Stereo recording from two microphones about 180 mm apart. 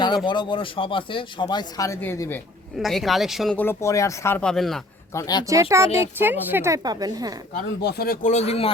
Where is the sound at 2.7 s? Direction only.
Centre (ahead or behind).